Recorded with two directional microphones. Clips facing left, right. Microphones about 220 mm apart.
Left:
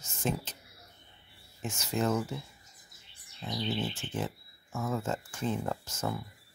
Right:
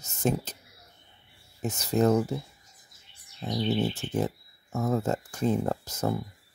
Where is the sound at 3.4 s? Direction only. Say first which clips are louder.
Right 7 dB; 40° right (ahead or behind).